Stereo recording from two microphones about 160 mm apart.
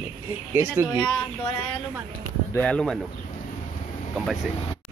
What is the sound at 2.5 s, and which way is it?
Speech, 5° left (ahead or behind).